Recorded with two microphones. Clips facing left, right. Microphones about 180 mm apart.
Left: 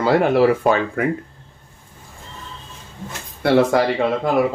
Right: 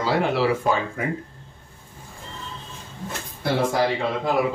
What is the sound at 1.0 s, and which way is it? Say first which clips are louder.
Speech: left 7 dB; 65° left (ahead or behind).